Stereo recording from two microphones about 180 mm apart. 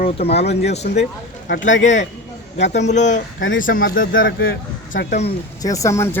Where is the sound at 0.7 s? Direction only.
40° left (ahead or behind).